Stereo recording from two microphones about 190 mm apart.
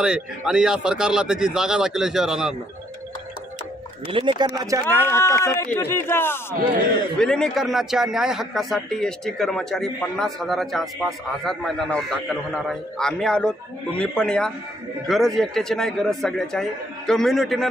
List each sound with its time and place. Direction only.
0.0 s speech: 5° right (ahead or behind)
4.1 s speech: 25° right (ahead or behind)
5.1 s speech: 15° left (ahead or behind)